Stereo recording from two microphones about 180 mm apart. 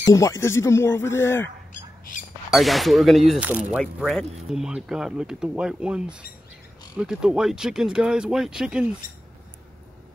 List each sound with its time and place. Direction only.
0.0 s speech: 15° left (ahead or behind)
2.5 s speech: centre (ahead or behind)